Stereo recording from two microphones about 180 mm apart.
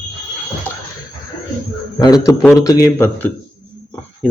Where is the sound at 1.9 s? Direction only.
20° left (ahead or behind).